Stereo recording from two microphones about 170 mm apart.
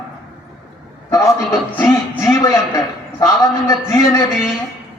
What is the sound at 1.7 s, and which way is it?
A man's voice, 15° left (ahead or behind).